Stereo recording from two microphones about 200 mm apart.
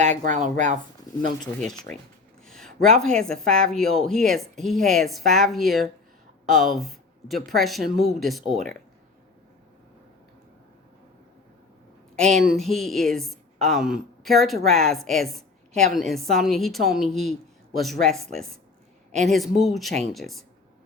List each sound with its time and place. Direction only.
0.0 s a woman's voice: 35° right (ahead or behind)
1.1 s a sound: 20° left (ahead or behind)
2.4 s speech: 5° left (ahead or behind)
12.1 s speech: 5° left (ahead or behind)